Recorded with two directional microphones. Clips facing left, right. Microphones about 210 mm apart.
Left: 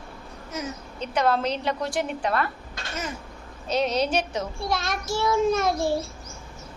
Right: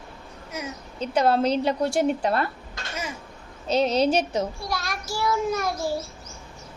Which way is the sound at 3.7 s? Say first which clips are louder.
Right 3 dB; 30° right (ahead or behind).